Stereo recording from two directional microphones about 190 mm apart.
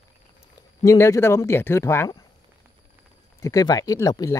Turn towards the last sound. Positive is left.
turn(degrees=15)  # may be behind; listen again after turning